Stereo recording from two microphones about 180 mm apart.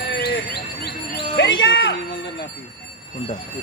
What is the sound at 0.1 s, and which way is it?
Bird, 75° left (ahead or behind).